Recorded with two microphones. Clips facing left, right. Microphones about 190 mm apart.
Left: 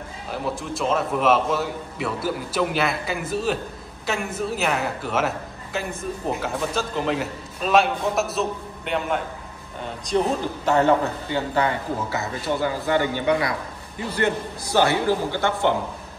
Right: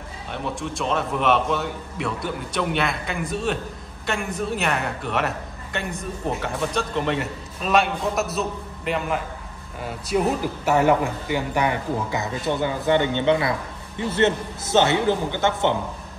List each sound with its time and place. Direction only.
0.3 s a man's voice: centre (ahead or behind); by 15.7 s 20° right (ahead or behind)